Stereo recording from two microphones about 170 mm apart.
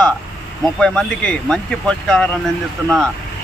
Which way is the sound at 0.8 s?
5° left (ahead or behind).